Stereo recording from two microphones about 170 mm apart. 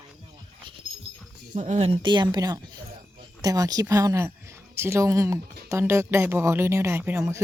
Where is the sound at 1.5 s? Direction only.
45° right (ahead or behind).